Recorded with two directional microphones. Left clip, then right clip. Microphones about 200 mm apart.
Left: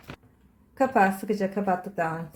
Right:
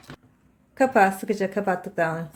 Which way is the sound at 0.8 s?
30° right (ahead or behind).